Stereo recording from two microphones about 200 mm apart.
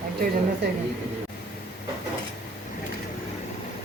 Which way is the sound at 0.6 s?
55° right (ahead or behind).